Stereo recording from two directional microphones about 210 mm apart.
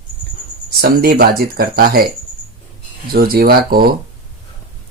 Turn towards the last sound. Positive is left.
turn(degrees=-45)  # may be behind; listen again after turning